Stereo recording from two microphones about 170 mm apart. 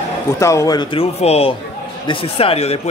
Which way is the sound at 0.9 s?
35° left (ahead or behind).